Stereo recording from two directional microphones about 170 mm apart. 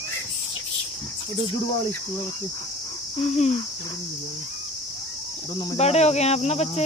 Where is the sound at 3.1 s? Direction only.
40° left (ahead or behind).